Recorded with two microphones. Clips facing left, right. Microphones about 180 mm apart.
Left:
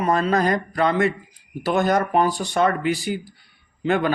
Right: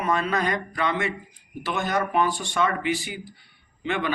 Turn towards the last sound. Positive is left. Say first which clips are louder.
# left 6 dB
turn(degrees=45)  # may be behind; listen again after turning